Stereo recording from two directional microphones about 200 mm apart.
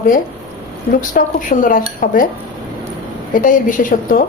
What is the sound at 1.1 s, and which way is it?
A woman's voice, 40° left (ahead or behind).